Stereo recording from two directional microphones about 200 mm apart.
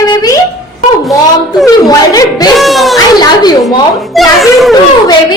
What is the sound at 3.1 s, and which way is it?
Speech, 20° left (ahead or behind).